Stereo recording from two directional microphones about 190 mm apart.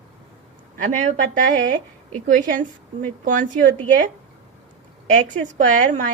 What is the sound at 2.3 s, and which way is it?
A woman's voice, 40° right (ahead or behind).